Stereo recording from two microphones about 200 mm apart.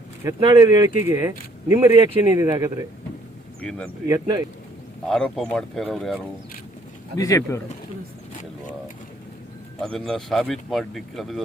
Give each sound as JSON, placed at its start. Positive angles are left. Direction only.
{"t": 0.3, "sound": "speech", "side_deg": -20}
{"t": 3.6, "sound": "speech", "side_deg": 5}
{"t": 4.1, "sound": "speech", "side_deg": -20}
{"t": 5.0, "sound": "speech", "side_deg": 0}
{"t": 7.2, "sound": "speech", "side_deg": 15}
{"t": 9.8, "sound": "speech", "side_deg": 5}